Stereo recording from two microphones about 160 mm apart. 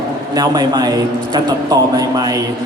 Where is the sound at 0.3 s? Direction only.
25° right (ahead or behind).